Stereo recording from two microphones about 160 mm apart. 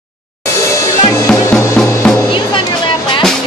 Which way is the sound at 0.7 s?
15° left (ahead or behind).